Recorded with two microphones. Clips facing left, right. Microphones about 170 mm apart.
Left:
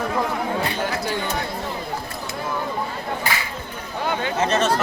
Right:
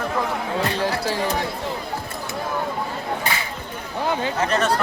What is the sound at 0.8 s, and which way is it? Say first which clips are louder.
Music: right 1 dB; 30° right (ahead or behind).